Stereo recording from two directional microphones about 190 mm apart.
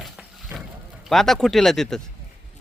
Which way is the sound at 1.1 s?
Centre (ahead or behind).